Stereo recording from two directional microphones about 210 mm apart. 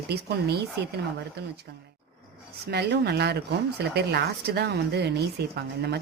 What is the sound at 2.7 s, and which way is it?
Speech, 50° right (ahead or behind).